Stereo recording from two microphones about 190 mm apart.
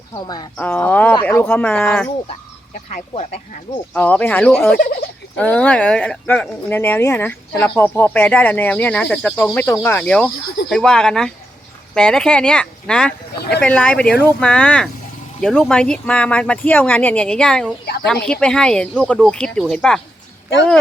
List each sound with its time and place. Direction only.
0.1 s speech: 20° left (ahead or behind)
0.6 s speech: 10° left (ahead or behind)
2.7 s speech: 40° left (ahead or behind)
3.9 s speech: 10° left (ahead or behind)
4.8 s turkey: 55° left (ahead or behind)
5.4 s speech: 5° left (ahead or behind)